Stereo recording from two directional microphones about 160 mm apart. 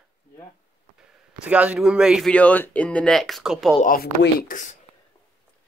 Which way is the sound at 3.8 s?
65° left (ahead or behind).